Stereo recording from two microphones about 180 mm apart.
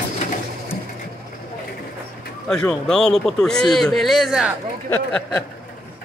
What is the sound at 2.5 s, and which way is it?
A man's voice, 5° left (ahead or behind).